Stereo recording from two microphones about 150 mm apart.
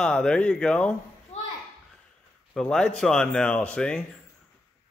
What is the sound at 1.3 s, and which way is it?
Children playing, 45° left (ahead or behind).